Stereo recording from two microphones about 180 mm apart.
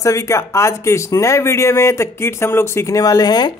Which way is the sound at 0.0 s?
15° left (ahead or behind).